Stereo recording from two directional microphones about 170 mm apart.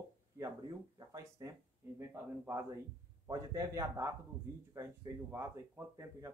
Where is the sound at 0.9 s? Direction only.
20° right (ahead or behind).